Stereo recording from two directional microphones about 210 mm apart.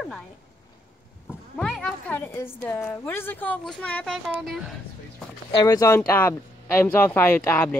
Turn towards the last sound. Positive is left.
turn(degrees=10)  # may be behind; listen again after turning